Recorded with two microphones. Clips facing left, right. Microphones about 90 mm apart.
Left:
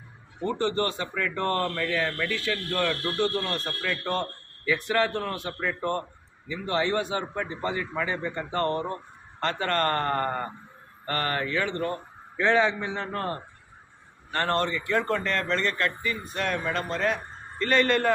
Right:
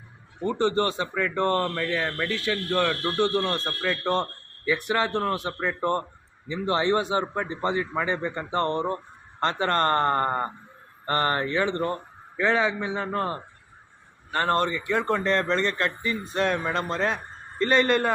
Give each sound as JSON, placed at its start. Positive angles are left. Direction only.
{"t": 0.4, "sound": "speech", "side_deg": -25}
{"t": 1.6, "sound": "a man's voice", "side_deg": -10}
{"t": 2.0, "sound": "speech", "side_deg": -20}
{"t": 12.4, "sound": "a man's voice", "side_deg": -5}
{"t": 14.3, "sound": "speech", "side_deg": -15}